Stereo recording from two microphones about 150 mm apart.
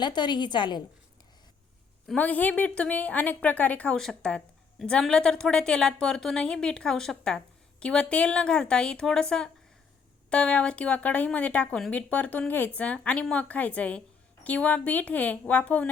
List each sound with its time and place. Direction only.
0.0 s a woman's voice: 30° left (ahead or behind)
2.0 s a woman's voice: 10° left (ahead or behind)